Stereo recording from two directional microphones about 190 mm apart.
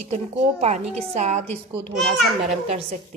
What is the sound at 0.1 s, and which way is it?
A woman's voice, 35° right (ahead or behind).